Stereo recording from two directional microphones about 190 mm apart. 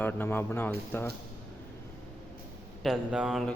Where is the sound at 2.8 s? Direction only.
5° right (ahead or behind).